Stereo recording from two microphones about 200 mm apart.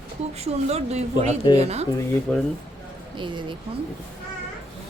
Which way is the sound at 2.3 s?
5° left (ahead or behind).